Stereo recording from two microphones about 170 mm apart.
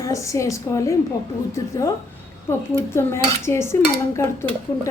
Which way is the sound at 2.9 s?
15° left (ahead or behind).